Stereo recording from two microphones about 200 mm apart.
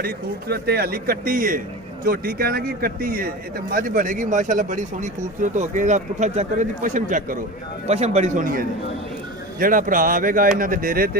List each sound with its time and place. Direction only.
0.0 s a man's voice: 50° right (ahead or behind)